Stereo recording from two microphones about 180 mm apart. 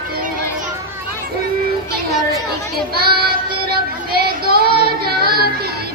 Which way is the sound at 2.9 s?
60° right (ahead or behind).